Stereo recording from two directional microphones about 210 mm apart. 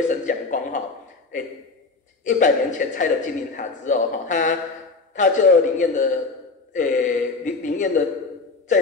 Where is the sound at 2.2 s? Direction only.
35° left (ahead or behind).